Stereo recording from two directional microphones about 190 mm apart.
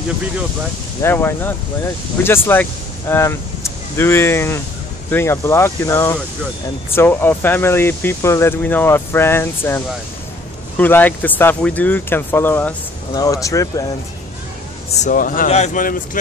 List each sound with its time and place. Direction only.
1.0 s speech: 10° left (ahead or behind)
14.9 s speech: 40° left (ahead or behind)